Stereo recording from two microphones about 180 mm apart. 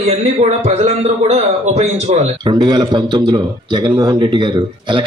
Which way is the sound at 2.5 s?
25° right (ahead or behind).